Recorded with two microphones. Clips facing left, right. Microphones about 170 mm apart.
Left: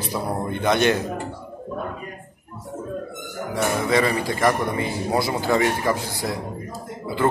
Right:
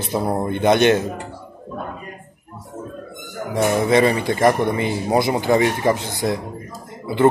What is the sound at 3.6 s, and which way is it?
Speech, 20° right (ahead or behind).